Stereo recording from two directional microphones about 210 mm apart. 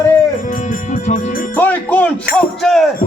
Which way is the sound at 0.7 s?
40° left (ahead or behind).